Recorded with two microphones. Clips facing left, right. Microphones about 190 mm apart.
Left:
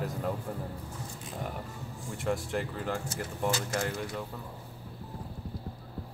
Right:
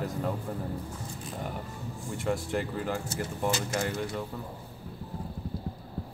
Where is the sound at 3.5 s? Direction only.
20° right (ahead or behind).